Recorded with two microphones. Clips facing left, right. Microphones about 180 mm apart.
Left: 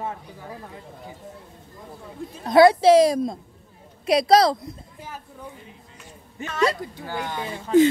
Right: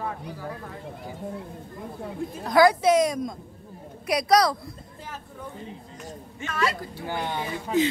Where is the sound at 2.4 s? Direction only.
25° left (ahead or behind).